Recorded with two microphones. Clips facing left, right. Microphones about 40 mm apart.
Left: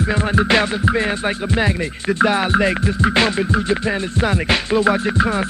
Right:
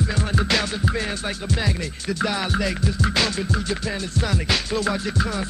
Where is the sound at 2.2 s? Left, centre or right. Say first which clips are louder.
Left 8 dB; left.